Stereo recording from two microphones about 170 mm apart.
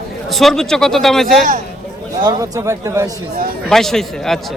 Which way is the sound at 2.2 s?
20° right (ahead or behind).